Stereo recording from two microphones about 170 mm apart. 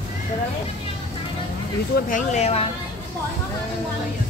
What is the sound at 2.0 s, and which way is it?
Speech, 45° left (ahead or behind).